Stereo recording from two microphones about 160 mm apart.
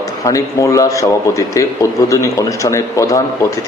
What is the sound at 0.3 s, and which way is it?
A man's voice, 20° left (ahead or behind).